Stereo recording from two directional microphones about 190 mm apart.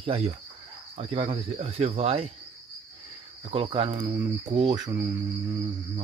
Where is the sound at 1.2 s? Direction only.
30° right (ahead or behind).